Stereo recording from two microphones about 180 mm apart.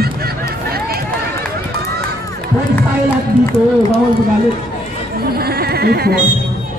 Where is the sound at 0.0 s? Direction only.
60° right (ahead or behind).